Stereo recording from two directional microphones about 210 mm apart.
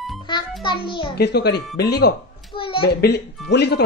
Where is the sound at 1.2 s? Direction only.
50° left (ahead or behind).